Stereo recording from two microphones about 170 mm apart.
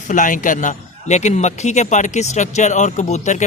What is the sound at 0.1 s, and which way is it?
A man's voice, 50° left (ahead or behind).